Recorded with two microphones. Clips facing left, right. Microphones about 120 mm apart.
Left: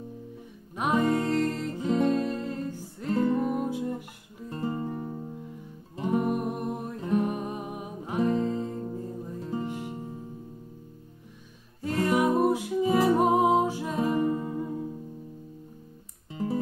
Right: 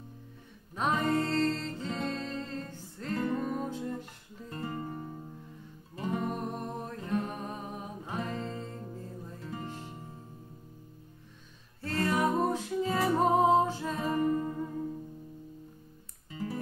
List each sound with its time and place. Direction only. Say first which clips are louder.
0.7 s music: left 4 dB; 15° left (ahead or behind)
11.8 s music: left 4 dB; 15° left (ahead or behind)
16.3 s music: left 6 dB; 25° left (ahead or behind)